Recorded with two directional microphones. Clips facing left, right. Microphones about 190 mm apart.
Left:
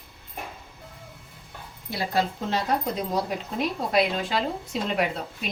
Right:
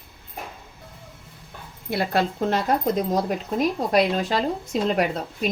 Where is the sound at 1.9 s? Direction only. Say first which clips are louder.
Right 3 dB; 60° right (ahead or behind); by 5.1 s 40° right (ahead or behind).